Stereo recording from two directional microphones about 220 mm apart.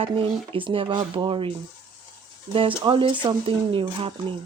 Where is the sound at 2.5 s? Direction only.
25° right (ahead or behind).